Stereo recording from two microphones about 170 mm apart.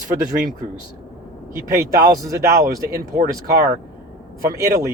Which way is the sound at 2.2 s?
20° right (ahead or behind).